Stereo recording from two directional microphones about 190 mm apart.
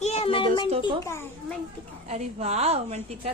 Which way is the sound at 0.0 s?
30° left (ahead or behind).